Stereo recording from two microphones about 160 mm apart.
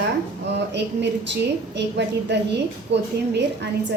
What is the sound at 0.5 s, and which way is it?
A woman's voice, 90° right.